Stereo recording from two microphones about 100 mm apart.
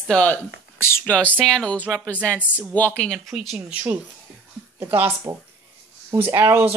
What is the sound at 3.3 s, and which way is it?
Speech, 5° right (ahead or behind).